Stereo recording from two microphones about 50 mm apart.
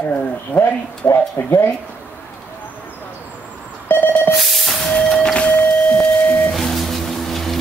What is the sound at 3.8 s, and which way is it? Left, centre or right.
Telephone dialing, left.